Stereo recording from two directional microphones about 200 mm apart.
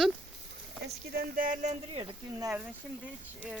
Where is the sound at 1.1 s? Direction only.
45° right (ahead or behind).